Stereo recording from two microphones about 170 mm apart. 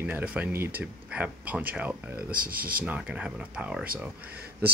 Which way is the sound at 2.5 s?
60° right (ahead or behind).